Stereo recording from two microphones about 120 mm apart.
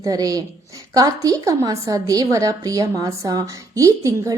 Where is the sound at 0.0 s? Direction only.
30° right (ahead or behind).